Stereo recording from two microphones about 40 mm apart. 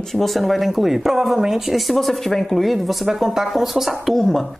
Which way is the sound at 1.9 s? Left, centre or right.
Centre.